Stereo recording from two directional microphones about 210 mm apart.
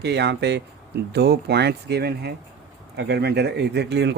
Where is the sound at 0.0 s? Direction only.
55° right (ahead or behind).